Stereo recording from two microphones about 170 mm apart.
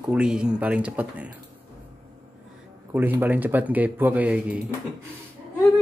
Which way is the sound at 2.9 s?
10° right (ahead or behind).